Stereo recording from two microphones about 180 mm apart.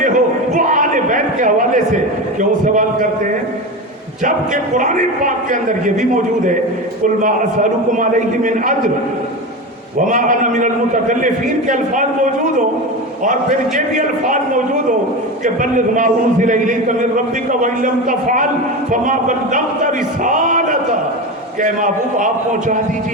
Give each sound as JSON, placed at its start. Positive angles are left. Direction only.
{"t": 0.0, "sound": "a sound", "side_deg": -45}
{"t": 2.4, "sound": "a man's voice", "side_deg": -45}
{"t": 4.7, "sound": "a man's voice", "side_deg": -45}
{"t": 10.1, "sound": "a man's voice", "side_deg": -45}
{"t": 13.7, "sound": "a man's voice", "side_deg": -45}